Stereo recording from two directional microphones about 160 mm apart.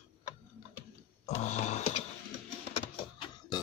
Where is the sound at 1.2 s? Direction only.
45° left (ahead or behind).